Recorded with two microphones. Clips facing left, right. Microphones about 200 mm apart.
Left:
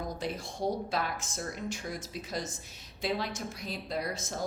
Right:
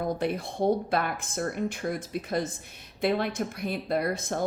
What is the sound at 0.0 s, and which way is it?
Speech, 60° right (ahead or behind).